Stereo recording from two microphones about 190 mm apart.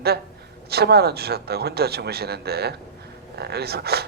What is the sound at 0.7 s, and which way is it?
Speech, 55° right (ahead or behind).